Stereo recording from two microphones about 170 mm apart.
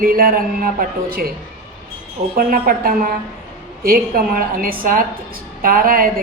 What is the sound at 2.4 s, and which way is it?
A woman's voice, 55° right (ahead or behind).